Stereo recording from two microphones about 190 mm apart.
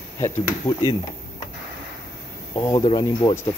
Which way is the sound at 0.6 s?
15° left (ahead or behind).